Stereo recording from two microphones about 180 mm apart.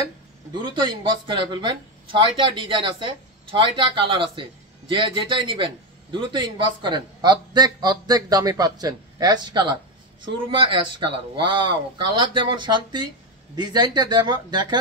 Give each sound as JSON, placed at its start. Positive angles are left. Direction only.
{"t": 0.5, "sound": "speech", "side_deg": -25}